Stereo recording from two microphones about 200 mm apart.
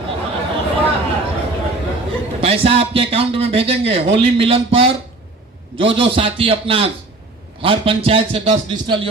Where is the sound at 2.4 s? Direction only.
30° right (ahead or behind).